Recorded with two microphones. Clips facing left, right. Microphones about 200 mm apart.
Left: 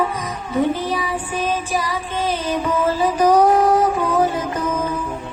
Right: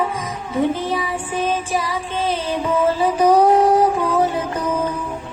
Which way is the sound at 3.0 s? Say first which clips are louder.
Left 1 dB; 30° right (ahead or behind).